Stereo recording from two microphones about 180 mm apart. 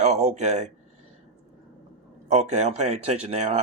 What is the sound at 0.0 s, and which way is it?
Speech, 40° right (ahead or behind).